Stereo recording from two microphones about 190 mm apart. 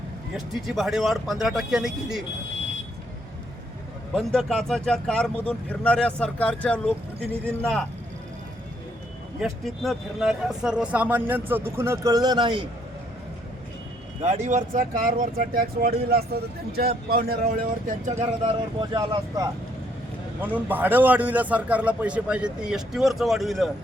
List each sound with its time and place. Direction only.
0.3 s speech: centre (ahead or behind)
4.1 s speech: centre (ahead or behind)
9.4 s a man's voice: centre (ahead or behind); by 12.6 s 25° right (ahead or behind)
14.2 s speech: 35° right (ahead or behind)
18.8 s speech: 20° right (ahead or behind)
20.4 s a man's voice: 10° right (ahead or behind)